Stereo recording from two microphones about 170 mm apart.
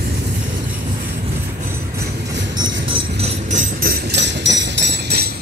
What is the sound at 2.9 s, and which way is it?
Music, 35° right (ahead or behind).